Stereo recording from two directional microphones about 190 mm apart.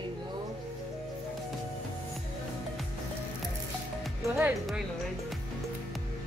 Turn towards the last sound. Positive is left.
turn(degrees=-5)  # may be behind; listen again after turning